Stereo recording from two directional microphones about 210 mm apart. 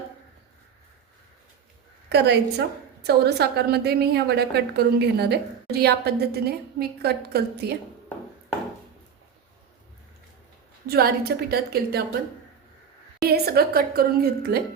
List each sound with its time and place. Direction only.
2.0 s a woman's voice: 55° right (ahead or behind)
10.8 s a woman's voice: 45° right (ahead or behind)
13.2 s a woman's voice: 50° right (ahead or behind)